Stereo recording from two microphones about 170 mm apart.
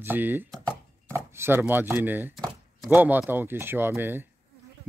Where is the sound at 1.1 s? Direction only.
15° right (ahead or behind).